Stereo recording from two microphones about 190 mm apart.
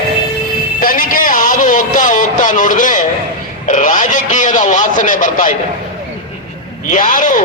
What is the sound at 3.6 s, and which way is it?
A man's voice, 45° left (ahead or behind).